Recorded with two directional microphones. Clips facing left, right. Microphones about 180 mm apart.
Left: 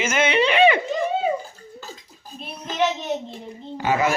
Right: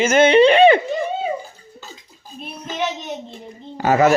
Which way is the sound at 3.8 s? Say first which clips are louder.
Right 6 dB; 40° right (ahead or behind).